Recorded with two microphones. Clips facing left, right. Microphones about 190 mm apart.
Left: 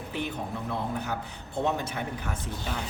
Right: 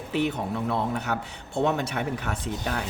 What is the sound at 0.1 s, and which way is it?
A man's voice, 75° right (ahead or behind).